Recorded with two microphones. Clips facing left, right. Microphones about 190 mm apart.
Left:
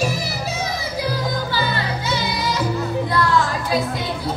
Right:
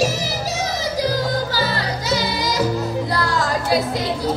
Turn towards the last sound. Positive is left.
turn(degrees=-40)  # may be behind; listen again after turning